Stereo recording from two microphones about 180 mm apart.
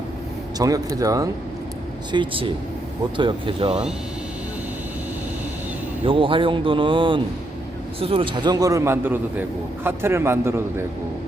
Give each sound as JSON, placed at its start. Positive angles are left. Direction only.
{"t": 0.6, "sound": "speech", "side_deg": -20}
{"t": 2.1, "sound": "speech", "side_deg": -30}
{"t": 6.1, "sound": "a man's voice", "side_deg": -30}